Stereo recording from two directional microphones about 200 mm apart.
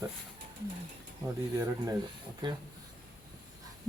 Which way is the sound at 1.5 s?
15° right (ahead or behind).